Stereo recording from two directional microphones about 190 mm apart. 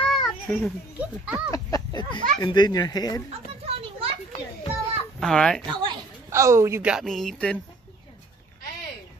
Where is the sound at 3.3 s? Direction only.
30° right (ahead or behind).